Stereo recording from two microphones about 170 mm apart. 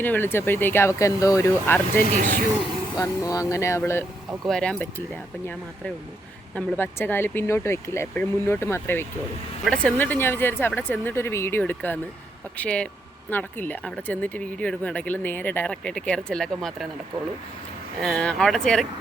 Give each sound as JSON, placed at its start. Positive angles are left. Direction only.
{"t": 0.0, "sound": "speech", "side_deg": 10}
{"t": 2.1, "sound": "speech", "side_deg": -50}
{"t": 3.0, "sound": "speech", "side_deg": 20}
{"t": 4.4, "sound": "speech", "side_deg": 5}
{"t": 6.6, "sound": "speech", "side_deg": 10}
{"t": 18.0, "sound": "speech", "side_deg": 5}